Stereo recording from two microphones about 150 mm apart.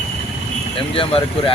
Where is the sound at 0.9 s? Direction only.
35° left (ahead or behind).